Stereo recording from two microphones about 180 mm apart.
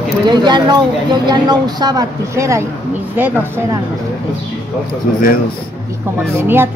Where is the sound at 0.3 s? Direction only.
25° right (ahead or behind).